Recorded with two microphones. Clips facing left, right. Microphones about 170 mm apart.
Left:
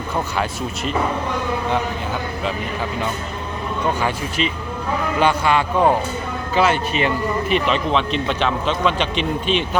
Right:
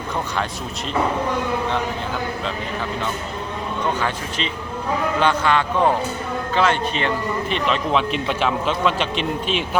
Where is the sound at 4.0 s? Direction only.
10° left (ahead or behind).